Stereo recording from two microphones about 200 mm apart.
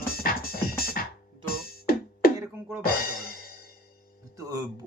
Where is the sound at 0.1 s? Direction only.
50° left (ahead or behind).